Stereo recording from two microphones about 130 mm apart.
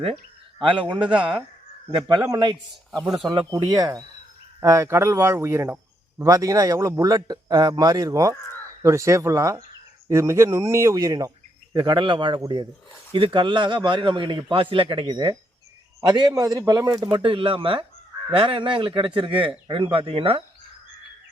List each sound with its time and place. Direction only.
1.9 s speech: 35° right (ahead or behind)
2.9 s speech: centre (ahead or behind)
3.2 s a man's voice: 35° right (ahead or behind)
17.1 s speech: 40° right (ahead or behind)